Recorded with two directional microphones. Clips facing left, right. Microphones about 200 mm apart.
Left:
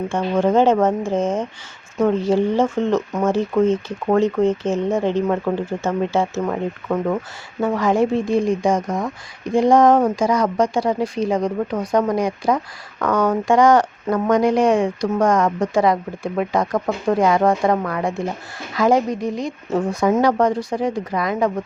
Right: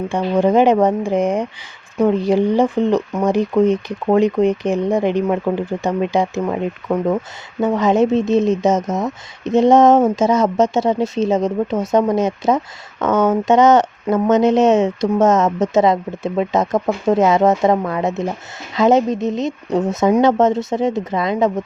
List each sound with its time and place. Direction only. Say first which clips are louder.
0.1 s speech: right 3 dB; 15° right (ahead or behind)